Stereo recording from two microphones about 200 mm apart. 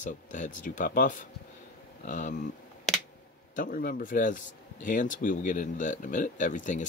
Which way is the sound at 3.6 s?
45° left (ahead or behind).